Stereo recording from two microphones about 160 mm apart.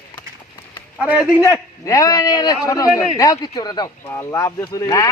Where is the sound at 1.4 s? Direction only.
20° left (ahead or behind).